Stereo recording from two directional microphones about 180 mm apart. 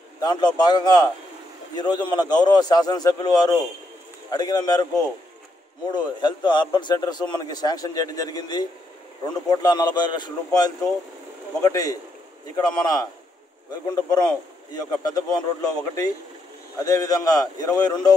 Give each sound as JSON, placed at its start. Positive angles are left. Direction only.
{"t": 0.2, "sound": "a man's voice", "side_deg": 25}
{"t": 5.9, "sound": "a man's voice", "side_deg": 25}